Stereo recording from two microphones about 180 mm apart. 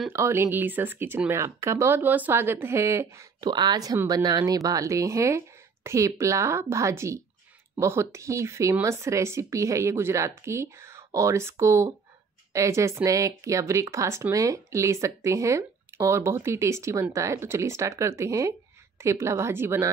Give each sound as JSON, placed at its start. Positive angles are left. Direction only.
{"t": 0.1, "sound": "speech", "side_deg": -15}